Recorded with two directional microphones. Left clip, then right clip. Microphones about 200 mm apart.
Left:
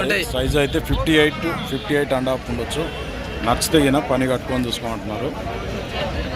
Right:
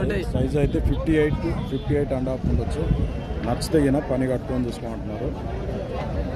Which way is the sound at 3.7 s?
10° left (ahead or behind).